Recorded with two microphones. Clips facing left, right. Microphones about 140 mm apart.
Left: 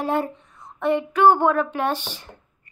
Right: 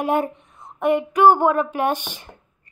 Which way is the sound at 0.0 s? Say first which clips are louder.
Right 2 dB; 15° right (ahead or behind).